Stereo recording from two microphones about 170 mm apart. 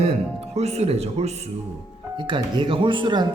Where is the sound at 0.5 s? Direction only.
40° right (ahead or behind).